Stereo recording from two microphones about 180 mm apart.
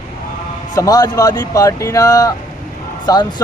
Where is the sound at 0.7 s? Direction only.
20° left (ahead or behind).